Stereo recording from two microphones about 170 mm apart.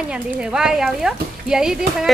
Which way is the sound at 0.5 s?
5° right (ahead or behind).